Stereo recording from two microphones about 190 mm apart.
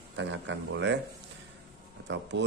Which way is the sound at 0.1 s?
70° right (ahead or behind).